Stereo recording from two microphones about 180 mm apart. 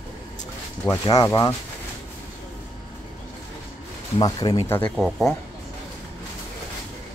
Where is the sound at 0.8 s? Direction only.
15° left (ahead or behind).